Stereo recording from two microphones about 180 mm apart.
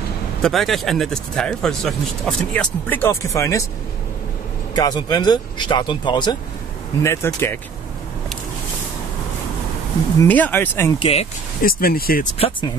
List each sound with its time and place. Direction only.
0.4 s speech: centre (ahead or behind); by 3.6 s 15° left (ahead or behind)
4.7 s speech: 20° left (ahead or behind)
7.0 s speech: 15° left (ahead or behind)
10.2 s speech: 10° left (ahead or behind)
11.0 s speech: 35° left (ahead or behind)
11.6 s speech: 55° left (ahead or behind)
12.4 s speech: 30° left (ahead or behind)